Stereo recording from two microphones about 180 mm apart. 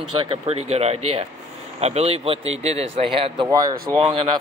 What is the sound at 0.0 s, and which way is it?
Speech, 35° right (ahead or behind).